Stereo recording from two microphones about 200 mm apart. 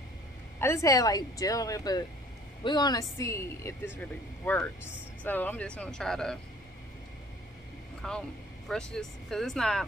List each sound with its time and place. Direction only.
0.6 s speech: 15° left (ahead or behind)
8.0 s speech: centre (ahead or behind)